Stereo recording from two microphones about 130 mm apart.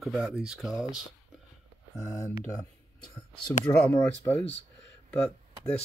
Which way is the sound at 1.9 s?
25° left (ahead or behind).